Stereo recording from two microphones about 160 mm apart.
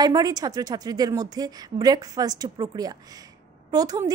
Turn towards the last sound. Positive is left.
turn(degrees=-25)  # may be behind; listen again after turning